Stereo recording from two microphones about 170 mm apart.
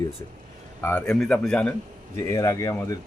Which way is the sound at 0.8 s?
5° left (ahead or behind).